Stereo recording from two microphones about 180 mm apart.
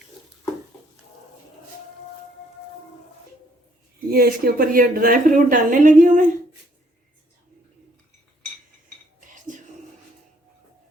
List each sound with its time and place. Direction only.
4.1 s a woman's voice: 55° right (ahead or behind)